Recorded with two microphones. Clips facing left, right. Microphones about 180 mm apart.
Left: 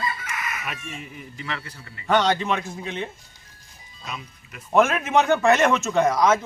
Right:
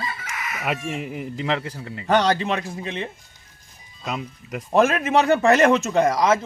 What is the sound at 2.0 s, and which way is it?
Speech, 35° right (ahead or behind).